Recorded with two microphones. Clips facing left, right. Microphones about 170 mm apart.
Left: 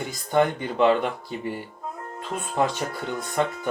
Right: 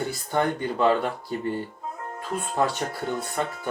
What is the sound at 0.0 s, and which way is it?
Speech, 15° left (ahead or behind).